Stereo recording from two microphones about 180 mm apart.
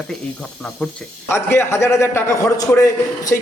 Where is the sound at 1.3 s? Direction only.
15° left (ahead or behind).